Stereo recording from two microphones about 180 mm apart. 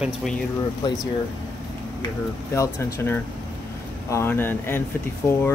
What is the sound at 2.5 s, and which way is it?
Speech, 15° left (ahead or behind).